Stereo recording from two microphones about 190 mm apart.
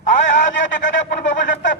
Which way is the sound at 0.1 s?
40° left (ahead or behind).